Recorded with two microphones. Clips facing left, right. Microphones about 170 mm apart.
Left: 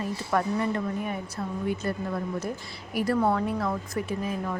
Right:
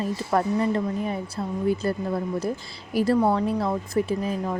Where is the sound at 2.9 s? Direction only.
30° right (ahead or behind).